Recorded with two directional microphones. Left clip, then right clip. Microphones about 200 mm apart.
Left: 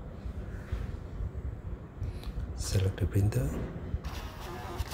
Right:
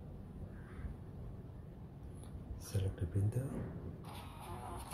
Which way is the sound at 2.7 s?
20° left (ahead or behind).